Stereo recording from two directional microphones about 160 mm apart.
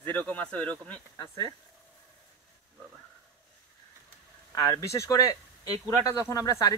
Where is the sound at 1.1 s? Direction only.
25° left (ahead or behind).